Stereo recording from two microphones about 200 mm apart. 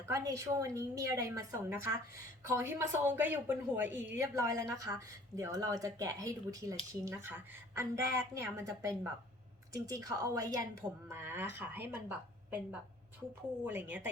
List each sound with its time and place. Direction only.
0.0 s a woman's voice: 15° right (ahead or behind)
13.7 s a woman's voice: 10° right (ahead or behind)